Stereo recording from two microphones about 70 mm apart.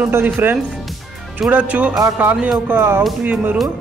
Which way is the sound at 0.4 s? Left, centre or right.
Right.